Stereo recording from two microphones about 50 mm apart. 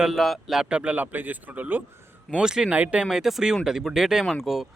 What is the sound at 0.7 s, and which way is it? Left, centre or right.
Speech, right.